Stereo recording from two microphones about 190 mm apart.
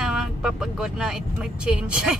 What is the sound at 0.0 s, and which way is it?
Speech, 5° right (ahead or behind).